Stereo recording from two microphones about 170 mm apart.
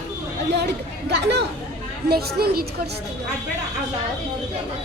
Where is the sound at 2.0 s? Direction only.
65° right (ahead or behind).